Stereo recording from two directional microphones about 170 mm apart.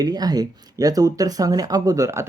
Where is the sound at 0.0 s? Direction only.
25° right (ahead or behind).